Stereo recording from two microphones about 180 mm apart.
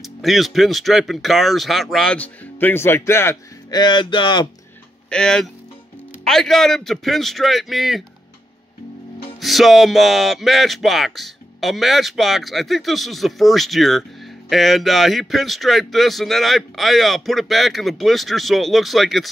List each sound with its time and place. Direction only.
0.0 s speech: centre (ahead or behind)
3.8 s speech: 25° left (ahead or behind)
5.1 s speech: 5° left (ahead or behind)
9.4 s speech: centre (ahead or behind)